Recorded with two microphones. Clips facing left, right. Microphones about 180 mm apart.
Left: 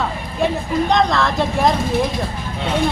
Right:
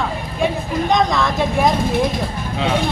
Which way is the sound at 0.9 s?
Centre (ahead or behind).